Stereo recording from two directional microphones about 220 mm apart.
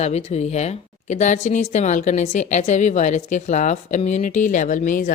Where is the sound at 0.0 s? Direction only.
30° left (ahead or behind).